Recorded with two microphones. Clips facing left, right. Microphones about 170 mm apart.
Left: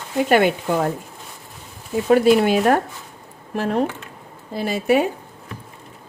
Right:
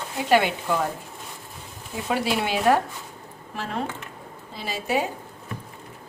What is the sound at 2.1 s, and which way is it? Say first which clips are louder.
Speech: left 10 dB; 50° left (ahead or behind).